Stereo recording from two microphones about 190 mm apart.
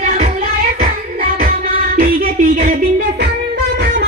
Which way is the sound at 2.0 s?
50° right (ahead or behind).